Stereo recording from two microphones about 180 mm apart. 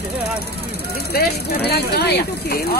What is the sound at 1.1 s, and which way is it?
Speech, 65° left (ahead or behind).